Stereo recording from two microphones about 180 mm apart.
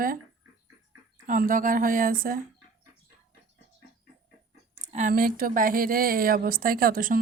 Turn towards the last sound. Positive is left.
turn(degrees=-50)  # may be behind; listen again after turning